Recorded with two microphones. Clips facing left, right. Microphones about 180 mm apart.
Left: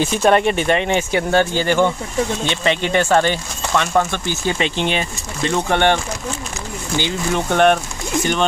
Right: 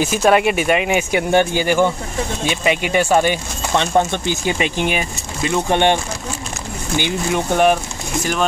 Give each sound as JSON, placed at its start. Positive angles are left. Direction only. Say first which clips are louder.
{"t": 0.0, "sound": "speech", "louder": "even", "side_deg": -5}
{"t": 3.7, "sound": "speech", "louder": "right 1 dB", "side_deg": -25}
{"t": 7.0, "sound": "speech", "louder": "right 1 dB", "side_deg": -15}